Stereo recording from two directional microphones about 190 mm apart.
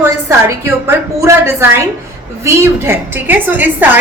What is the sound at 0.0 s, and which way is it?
A woman's voice, 15° right (ahead or behind).